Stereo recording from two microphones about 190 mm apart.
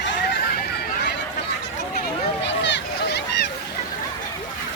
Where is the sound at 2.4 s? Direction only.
70° left (ahead or behind).